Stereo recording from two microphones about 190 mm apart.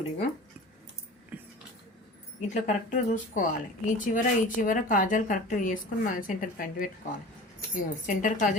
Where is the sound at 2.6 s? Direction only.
40° left (ahead or behind).